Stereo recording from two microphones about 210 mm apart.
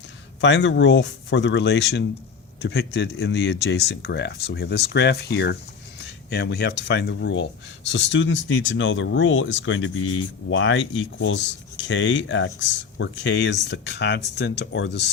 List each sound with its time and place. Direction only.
0.4 s speech: 60° left (ahead or behind)